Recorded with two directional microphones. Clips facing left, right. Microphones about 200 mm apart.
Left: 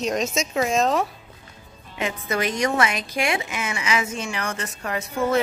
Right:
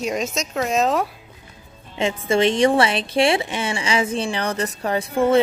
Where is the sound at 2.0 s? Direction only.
25° right (ahead or behind).